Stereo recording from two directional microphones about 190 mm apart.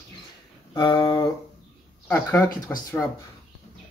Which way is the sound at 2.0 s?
5° left (ahead or behind).